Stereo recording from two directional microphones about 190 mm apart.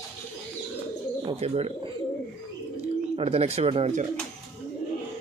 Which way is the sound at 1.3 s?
35° right (ahead or behind).